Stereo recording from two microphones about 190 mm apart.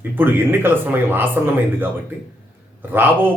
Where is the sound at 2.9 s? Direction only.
10° right (ahead or behind).